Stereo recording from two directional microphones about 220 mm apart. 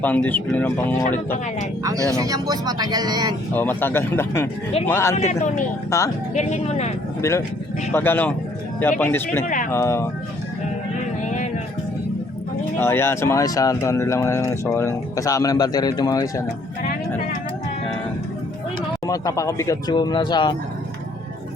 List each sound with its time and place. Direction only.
0.0 s speech: 5° left (ahead or behind)
1.8 s speech: 15° right (ahead or behind)
3.5 s speech: 10° left (ahead or behind)
5.2 s speech: 30° left (ahead or behind)
5.9 s speech: 15° left (ahead or behind)
6.3 s speech: 30° left (ahead or behind)
7.2 s speech: 15° left (ahead or behind)
12.8 s speech: 10° left (ahead or behind)
19.0 s speech: 15° left (ahead or behind)